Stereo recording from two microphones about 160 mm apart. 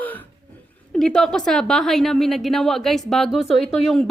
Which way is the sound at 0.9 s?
Centre (ahead or behind).